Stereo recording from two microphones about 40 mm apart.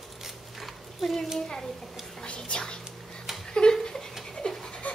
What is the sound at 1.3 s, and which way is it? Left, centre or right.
A child's voice, centre.